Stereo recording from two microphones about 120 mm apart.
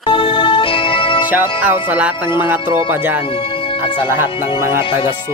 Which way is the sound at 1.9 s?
15° right (ahead or behind).